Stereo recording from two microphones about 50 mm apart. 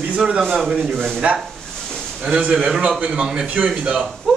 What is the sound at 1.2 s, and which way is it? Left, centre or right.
A man's voice, right.